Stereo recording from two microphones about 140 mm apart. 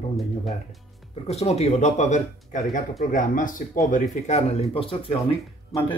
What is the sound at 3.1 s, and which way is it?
Speech, 70° left (ahead or behind).